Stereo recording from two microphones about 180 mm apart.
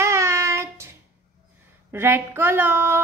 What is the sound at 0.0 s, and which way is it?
Child singing, 15° right (ahead or behind).